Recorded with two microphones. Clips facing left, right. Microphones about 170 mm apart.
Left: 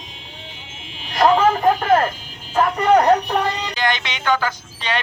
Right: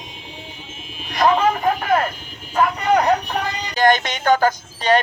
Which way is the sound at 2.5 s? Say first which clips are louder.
Left 2 dB; 35° left (ahead or behind).